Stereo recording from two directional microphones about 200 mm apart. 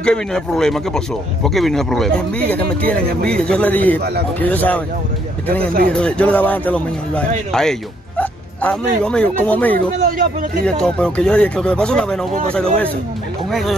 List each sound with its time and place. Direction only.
0.0 s speech: 5° left (ahead or behind)
5.9 s speech: 5° left (ahead or behind)
10.0 s a man's voice: 45° right (ahead or behind)
10.6 s speech: 5° left (ahead or behind)